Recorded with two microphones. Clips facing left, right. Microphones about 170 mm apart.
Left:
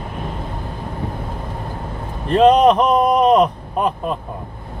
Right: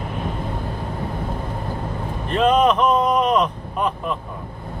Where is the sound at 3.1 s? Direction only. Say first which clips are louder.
Left 5 dB; 35° left (ahead or behind).